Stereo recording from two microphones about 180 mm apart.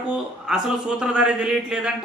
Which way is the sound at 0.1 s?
5° right (ahead or behind).